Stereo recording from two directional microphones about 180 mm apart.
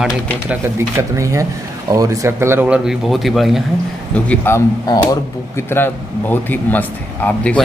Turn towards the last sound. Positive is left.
turn(degrees=5)  # may be behind; listen again after turning